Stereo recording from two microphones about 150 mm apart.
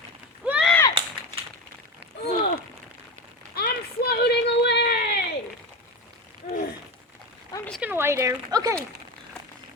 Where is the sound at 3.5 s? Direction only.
90° left.